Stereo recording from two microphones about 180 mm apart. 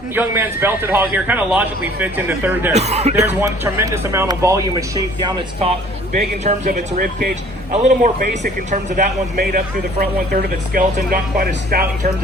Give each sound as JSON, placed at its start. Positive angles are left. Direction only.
{"t": 0.1, "sound": "a man's voice", "side_deg": -10}
{"t": 2.7, "sound": "speech", "side_deg": -35}
{"t": 3.2, "sound": "a man's voice", "side_deg": -15}
{"t": 6.4, "sound": "a man's voice", "side_deg": -40}